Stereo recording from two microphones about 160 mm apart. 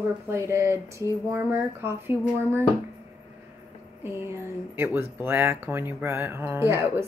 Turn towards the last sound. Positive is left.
turn(degrees=-15)  # may be behind; listen again after turning